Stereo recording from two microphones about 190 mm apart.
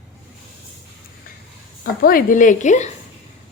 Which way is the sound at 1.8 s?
50° left (ahead or behind).